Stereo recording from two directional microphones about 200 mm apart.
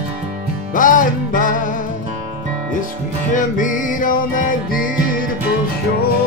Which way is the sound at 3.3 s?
40° left (ahead or behind).